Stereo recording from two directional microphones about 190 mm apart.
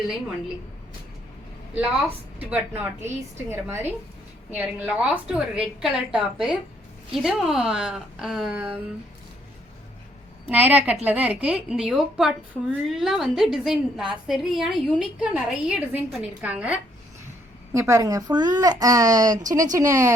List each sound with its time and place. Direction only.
2.5 s a woman's voice: 10° right (ahead or behind)
10.5 s a woman's voice: 10° right (ahead or behind)